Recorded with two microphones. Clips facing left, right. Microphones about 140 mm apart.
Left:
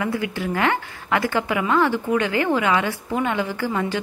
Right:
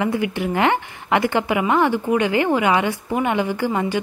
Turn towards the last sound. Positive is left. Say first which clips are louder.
# right 3 dB
turn(degrees=-15)  # may be behind; listen again after turning